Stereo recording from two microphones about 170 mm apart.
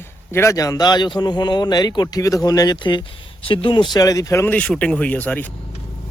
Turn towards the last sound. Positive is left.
turn(degrees=10)  # may be behind; listen again after turning